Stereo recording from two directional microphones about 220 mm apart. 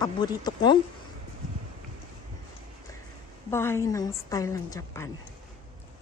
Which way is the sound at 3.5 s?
10° left (ahead or behind).